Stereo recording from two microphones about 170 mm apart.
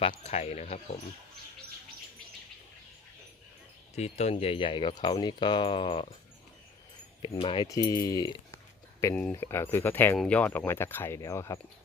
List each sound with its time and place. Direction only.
0.0 s speech: 35° left (ahead or behind)
3.9 s speech: 40° left (ahead or behind)
7.2 s speech: 30° left (ahead or behind)
9.0 s speech: 10° left (ahead or behind)